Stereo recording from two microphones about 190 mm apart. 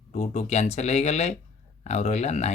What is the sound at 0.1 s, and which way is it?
Speech, 35° left (ahead or behind).